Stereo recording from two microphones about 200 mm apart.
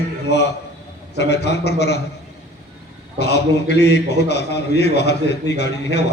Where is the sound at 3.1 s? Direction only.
55° left (ahead or behind).